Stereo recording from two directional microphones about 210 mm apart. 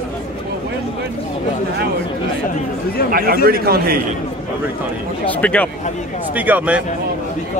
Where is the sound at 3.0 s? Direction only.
45° left (ahead or behind).